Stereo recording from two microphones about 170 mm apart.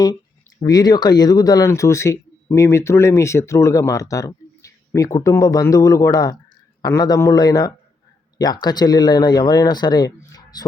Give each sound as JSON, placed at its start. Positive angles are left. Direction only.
{"t": 0.6, "sound": "speech", "side_deg": 20}